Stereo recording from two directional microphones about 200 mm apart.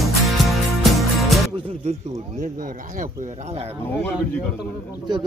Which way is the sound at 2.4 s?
40° right (ahead or behind).